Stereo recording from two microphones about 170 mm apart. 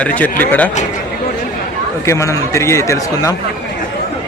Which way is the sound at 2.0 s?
15° left (ahead or behind).